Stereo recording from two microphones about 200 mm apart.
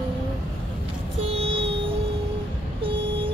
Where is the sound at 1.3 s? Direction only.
30° right (ahead or behind).